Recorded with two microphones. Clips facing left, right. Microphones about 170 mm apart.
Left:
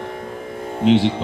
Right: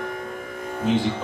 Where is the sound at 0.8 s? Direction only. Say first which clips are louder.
Left 7 dB; 75° left (ahead or behind).